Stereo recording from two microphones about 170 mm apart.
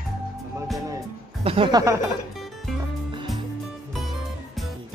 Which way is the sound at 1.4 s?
35° right (ahead or behind).